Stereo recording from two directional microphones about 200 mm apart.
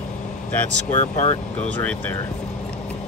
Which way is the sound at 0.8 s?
35° left (ahead or behind).